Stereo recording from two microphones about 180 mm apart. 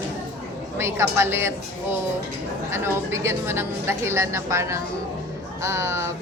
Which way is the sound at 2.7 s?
15° right (ahead or behind).